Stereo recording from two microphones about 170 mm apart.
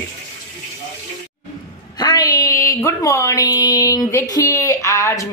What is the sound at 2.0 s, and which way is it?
A woman's voice, 20° left (ahead or behind).